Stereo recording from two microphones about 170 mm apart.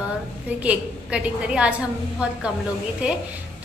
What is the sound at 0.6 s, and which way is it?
A woman's voice, 5° right (ahead or behind).